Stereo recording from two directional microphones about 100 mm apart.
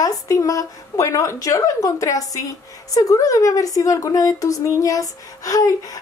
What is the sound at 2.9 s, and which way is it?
A woman's voice, 35° left (ahead or behind).